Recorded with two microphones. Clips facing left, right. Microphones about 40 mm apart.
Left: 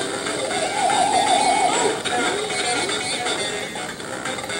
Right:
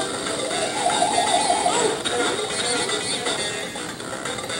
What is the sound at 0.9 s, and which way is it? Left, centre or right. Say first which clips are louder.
Music: left 3 dB; centre.